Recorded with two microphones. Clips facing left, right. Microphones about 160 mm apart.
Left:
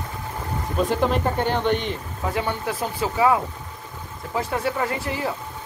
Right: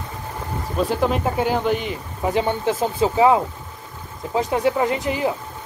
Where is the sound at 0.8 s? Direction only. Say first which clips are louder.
Right 1 dB; centre (ahead or behind).